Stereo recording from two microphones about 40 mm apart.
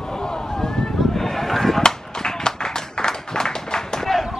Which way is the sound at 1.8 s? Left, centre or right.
Centre.